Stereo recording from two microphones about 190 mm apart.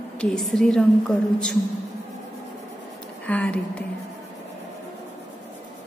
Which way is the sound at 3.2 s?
5° left (ahead or behind).